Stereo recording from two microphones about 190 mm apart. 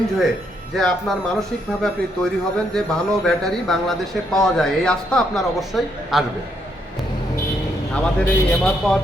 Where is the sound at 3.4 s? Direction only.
Centre (ahead or behind).